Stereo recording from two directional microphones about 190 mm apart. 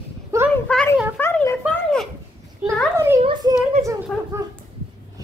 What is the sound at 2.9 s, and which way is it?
Children playing, 15° right (ahead or behind).